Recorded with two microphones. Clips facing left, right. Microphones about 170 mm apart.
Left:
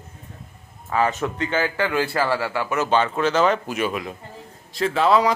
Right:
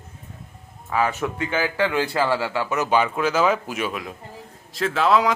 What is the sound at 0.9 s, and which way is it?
A man's voice, 10° right (ahead or behind).